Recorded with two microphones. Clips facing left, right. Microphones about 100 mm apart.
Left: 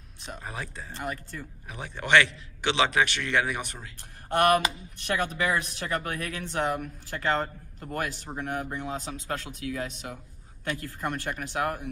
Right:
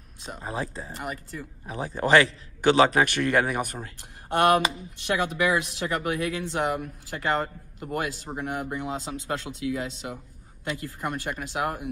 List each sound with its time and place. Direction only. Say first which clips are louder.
0.3 s speech: right 5 dB; 30° right (ahead or behind)
0.9 s speech: left 2 dB; 10° right (ahead or behind)
1.7 s a man's voice: right 3 dB; 35° right (ahead or behind)
5.1 s speech: right 3 dB; 20° right (ahead or behind)
9.0 s speech: right 3 dB; 30° right (ahead or behind)